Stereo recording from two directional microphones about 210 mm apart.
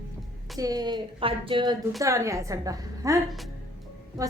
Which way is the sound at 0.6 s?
20° right (ahead or behind).